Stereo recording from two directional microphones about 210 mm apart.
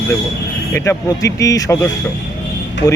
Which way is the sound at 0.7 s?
15° left (ahead or behind).